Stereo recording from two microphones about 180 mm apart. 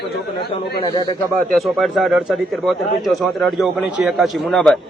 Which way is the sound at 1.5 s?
Centre (ahead or behind).